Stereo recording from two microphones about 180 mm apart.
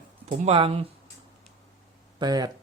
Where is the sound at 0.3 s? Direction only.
35° right (ahead or behind).